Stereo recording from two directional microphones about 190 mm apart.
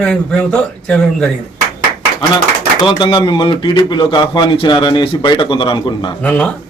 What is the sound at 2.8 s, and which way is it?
Speech, 25° left (ahead or behind).